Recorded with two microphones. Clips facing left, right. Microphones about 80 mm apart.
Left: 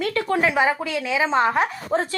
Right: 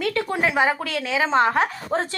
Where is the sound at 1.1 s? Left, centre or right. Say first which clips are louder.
Right 1 dB; right.